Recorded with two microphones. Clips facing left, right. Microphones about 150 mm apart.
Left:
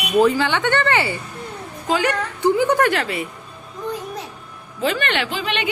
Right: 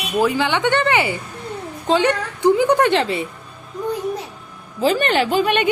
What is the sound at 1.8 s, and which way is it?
Speech, 30° right (ahead or behind).